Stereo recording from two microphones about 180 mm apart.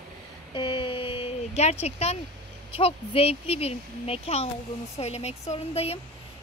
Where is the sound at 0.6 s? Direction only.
30° left (ahead or behind).